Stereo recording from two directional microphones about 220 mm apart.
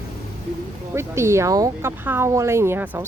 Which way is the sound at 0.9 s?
10° right (ahead or behind).